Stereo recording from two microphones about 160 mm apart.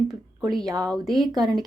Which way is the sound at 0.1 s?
Centre (ahead or behind).